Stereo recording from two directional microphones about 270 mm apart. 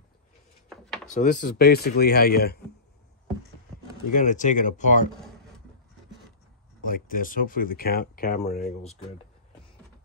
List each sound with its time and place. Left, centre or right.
0.7 s a sound: centre
1.1 s speech: left
4.1 s speech: left
6.8 s speech: left